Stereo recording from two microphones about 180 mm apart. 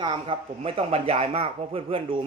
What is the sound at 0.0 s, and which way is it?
Speech, 25° right (ahead or behind).